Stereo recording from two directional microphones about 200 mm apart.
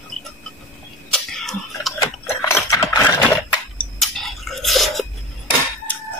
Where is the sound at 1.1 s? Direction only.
Centre (ahead or behind).